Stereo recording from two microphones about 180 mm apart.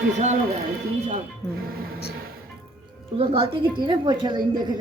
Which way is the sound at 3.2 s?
35° right (ahead or behind).